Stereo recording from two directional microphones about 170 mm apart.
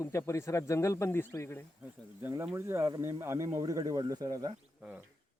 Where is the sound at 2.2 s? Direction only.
15° right (ahead or behind).